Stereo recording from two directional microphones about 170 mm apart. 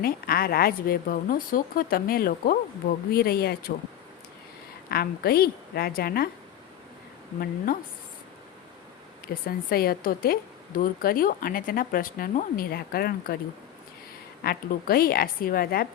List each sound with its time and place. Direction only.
0.0 s a woman's voice: 60° left (ahead or behind)
4.9 s a woman's voice: 65° left (ahead or behind)
7.3 s a woman's voice: 55° left (ahead or behind)
9.2 s a woman's voice: 60° left (ahead or behind)
14.4 s a woman's voice: 65° left (ahead or behind)